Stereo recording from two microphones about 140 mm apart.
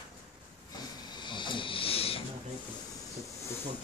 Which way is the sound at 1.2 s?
35° left (ahead or behind).